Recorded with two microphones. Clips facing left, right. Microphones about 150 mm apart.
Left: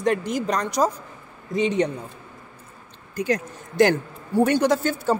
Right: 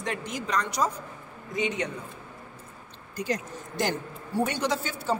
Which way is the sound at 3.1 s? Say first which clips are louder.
Left 6 dB; 60° left (ahead or behind).